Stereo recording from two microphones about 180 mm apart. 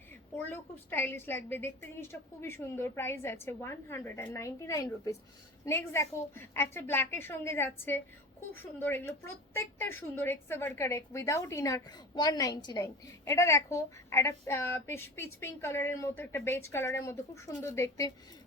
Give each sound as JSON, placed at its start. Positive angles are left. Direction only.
{"t": 0.3, "sound": "a woman's voice", "side_deg": 10}